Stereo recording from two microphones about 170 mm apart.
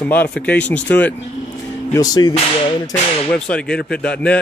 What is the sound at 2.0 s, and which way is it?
Music, 20° left (ahead or behind).